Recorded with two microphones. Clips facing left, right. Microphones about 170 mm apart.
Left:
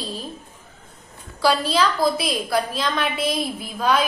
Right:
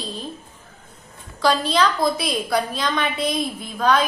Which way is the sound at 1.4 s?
5° left (ahead or behind).